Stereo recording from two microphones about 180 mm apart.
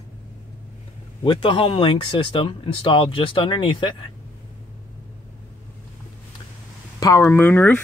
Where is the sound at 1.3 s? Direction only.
25° left (ahead or behind).